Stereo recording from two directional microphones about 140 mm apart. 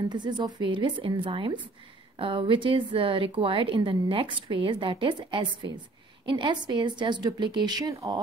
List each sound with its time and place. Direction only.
0.1 s a woman's voice: 30° right (ahead or behind)